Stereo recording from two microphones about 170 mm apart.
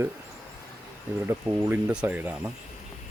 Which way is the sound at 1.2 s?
10° right (ahead or behind).